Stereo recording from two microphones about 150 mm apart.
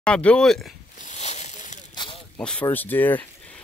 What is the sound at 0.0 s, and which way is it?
Speech, 5° left (ahead or behind).